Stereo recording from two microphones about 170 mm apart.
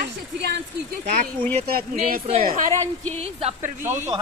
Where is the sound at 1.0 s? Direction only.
50° right (ahead or behind).